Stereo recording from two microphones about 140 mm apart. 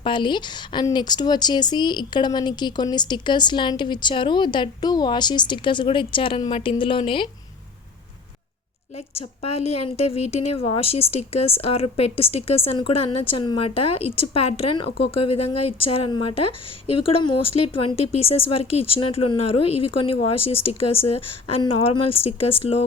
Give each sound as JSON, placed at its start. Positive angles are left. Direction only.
{"t": 0.0, "sound": "speech", "side_deg": 35}
{"t": 9.1, "sound": "a woman's voice", "side_deg": 45}